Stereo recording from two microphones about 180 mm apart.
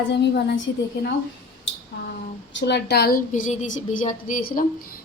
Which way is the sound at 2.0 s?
80° left.